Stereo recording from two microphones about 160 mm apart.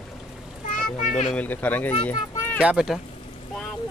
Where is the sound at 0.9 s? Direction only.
45° left (ahead or behind).